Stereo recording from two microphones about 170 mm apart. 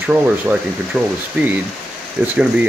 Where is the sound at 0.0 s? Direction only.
10° right (ahead or behind).